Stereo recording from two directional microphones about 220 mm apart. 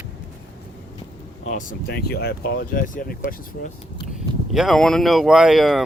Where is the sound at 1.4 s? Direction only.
35° left (ahead or behind).